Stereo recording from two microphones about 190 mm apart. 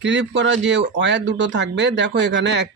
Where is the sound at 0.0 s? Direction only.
70° right (ahead or behind).